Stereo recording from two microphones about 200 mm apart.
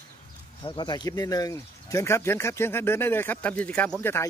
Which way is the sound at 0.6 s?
20° left (ahead or behind).